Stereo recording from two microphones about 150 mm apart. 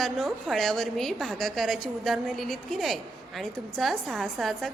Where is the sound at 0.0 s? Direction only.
Centre (ahead or behind).